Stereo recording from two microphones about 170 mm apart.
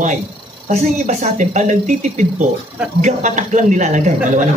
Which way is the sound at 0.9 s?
45° right (ahead or behind).